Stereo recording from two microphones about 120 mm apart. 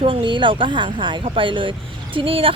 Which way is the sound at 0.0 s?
45° right (ahead or behind).